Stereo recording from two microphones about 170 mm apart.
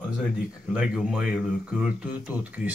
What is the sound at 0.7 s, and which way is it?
Speech, 5° right (ahead or behind).